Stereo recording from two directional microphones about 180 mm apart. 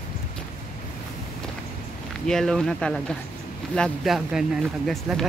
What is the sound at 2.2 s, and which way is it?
Speech, centre (ahead or behind).